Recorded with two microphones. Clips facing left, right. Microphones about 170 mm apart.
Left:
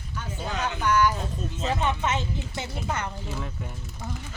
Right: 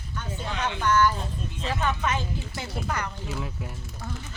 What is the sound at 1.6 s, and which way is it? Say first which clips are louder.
A woman's voice: left 1 dB; 20° left (ahead or behind).